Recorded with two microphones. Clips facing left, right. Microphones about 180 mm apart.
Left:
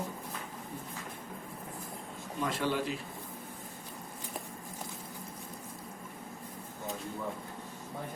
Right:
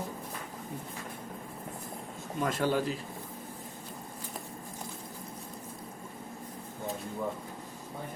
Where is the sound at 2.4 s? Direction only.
45° right (ahead or behind).